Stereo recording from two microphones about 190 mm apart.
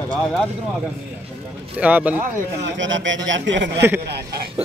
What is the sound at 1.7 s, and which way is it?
Speech, 10° right (ahead or behind).